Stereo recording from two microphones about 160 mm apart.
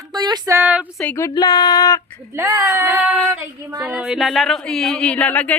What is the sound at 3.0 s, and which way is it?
Speech, 5° right (ahead or behind).